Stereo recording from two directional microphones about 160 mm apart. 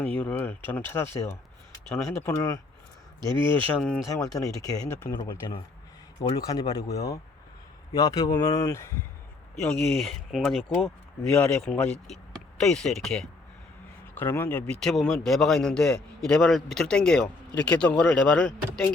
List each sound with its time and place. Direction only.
0.0 s speech: 10° left (ahead or behind)
3.2 s speech: 25° right (ahead or behind)
3.4 s speech: 10° left (ahead or behind)
4.4 s speech: 25° left (ahead or behind)
6.4 s speech: 20° left (ahead or behind)
9.6 s a man's voice: centre (ahead or behind)
14.2 s a man's voice: 10° left (ahead or behind)